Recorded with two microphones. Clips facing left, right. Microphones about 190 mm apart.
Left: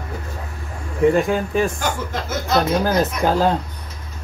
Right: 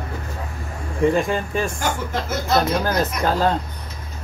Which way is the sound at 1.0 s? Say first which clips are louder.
Left 3 dB; centre (ahead or behind).